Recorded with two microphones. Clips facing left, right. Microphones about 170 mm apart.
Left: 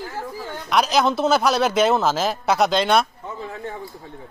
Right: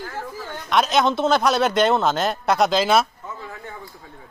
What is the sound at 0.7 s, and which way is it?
Speech, centre (ahead or behind).